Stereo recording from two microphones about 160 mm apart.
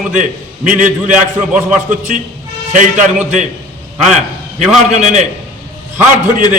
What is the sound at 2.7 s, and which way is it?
Speech, 55° right (ahead or behind).